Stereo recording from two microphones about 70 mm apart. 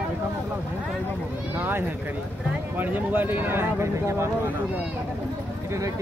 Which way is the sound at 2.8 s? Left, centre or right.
Right.